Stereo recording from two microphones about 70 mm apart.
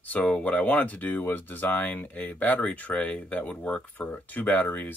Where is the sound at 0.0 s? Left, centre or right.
Left.